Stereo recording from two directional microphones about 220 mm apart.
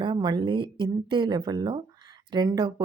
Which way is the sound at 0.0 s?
20° right (ahead or behind).